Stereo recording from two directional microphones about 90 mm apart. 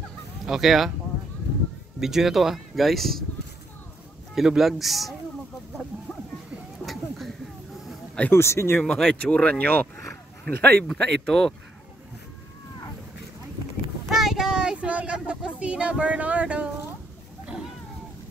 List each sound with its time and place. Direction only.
0.5 s speech: 5° right (ahead or behind)
2.0 s speech: 5° right (ahead or behind)
4.4 s speech: 5° right (ahead or behind)
6.9 s a sound: centre (ahead or behind)
8.2 s speech: 25° left (ahead or behind)
8.8 s speech: 5° left (ahead or behind)
9.2 s speech: 15° left (ahead or behind)
14.0 s a sound: 5° right (ahead or behind)